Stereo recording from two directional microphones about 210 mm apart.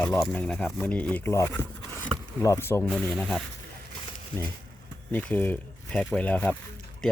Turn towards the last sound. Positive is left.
turn(degrees=5)  # may be behind; listen again after turning